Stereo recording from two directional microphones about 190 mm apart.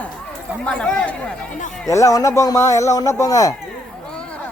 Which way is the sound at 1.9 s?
15° left (ahead or behind).